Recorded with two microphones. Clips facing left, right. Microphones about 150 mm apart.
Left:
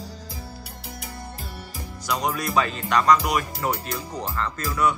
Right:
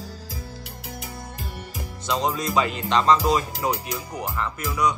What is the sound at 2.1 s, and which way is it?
Speech, 20° right (ahead or behind).